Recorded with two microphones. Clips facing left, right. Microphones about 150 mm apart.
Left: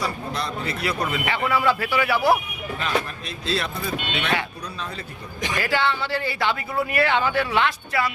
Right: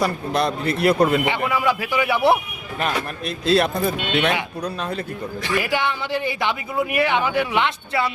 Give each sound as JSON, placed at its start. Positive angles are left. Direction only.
{"t": 0.0, "sound": "speech", "side_deg": -60}
{"t": 1.2, "sound": "speech", "side_deg": -15}
{"t": 2.8, "sound": "speech", "side_deg": -55}
{"t": 5.5, "sound": "speech", "side_deg": -15}